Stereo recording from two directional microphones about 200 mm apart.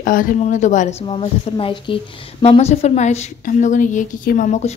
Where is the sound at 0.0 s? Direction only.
45° left (ahead or behind).